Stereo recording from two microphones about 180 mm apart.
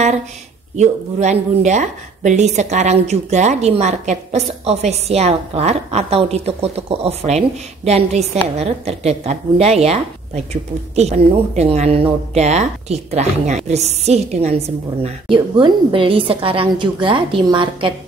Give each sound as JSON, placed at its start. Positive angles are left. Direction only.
{"t": 0.7, "sound": "a woman's voice", "side_deg": -40}